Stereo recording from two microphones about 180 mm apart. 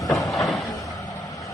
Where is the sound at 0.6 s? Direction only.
20° left (ahead or behind).